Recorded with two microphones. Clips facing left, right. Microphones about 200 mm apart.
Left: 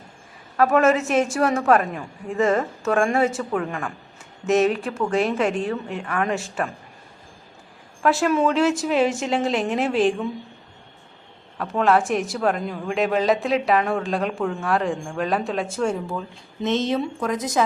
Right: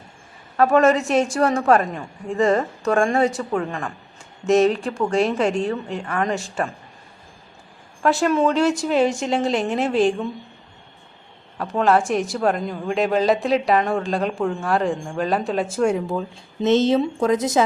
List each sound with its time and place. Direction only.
0.5 s a woman's voice: centre (ahead or behind)
8.0 s a woman's voice: centre (ahead or behind)
11.5 s a woman's voice: centre (ahead or behind)
16.6 s speech: 30° right (ahead or behind)